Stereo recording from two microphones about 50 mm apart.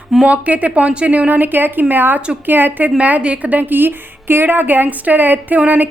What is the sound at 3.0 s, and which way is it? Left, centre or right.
A woman's voice, right.